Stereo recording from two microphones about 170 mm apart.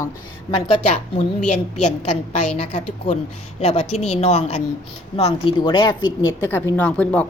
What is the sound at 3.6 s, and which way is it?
A woman's voice, 40° left (ahead or behind).